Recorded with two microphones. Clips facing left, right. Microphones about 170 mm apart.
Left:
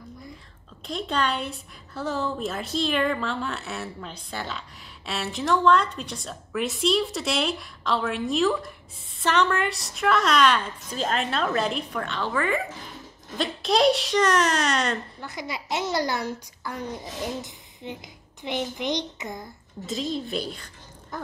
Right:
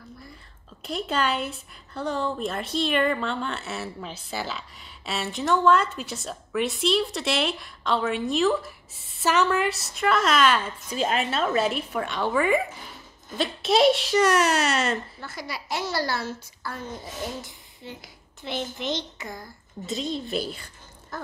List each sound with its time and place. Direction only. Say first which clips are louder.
0.8 s a woman's voice: right 1 dB; 5° right (ahead or behind)
15.1 s a child's voice: left 2 dB; 20° left (ahead or behind)
19.9 s a woman's voice: even; centre (ahead or behind)
21.1 s a sound: left 1 dB; 15° left (ahead or behind)